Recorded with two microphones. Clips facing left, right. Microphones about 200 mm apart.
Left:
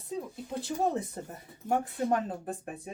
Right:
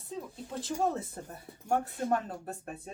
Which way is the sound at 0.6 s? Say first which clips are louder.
Left 1 dB; 15° left (ahead or behind).